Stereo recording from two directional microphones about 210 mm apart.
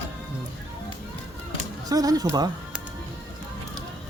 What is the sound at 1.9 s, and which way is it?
Speech, 15° right (ahead or behind).